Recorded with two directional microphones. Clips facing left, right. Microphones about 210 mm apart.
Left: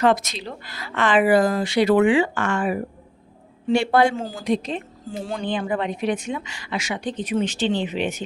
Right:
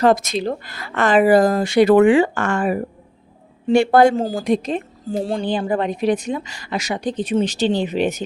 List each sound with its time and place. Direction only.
0.0 s a woman's voice: 45° right (ahead or behind)